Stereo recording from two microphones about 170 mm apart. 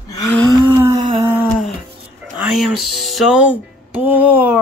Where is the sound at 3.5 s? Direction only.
10° right (ahead or behind).